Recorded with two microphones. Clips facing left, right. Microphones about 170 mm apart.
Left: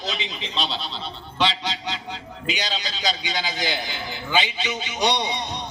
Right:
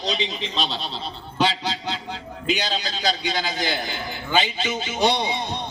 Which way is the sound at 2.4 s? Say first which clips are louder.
Right 4 dB; 50° right (ahead or behind).